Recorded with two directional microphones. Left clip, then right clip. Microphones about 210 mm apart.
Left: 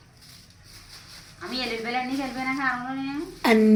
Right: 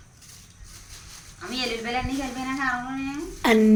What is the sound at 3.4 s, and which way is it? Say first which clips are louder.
Speech: even; centre (ahead or behind).